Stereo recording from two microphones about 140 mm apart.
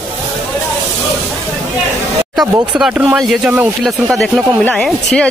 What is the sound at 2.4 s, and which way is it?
Speech, 25° right (ahead or behind).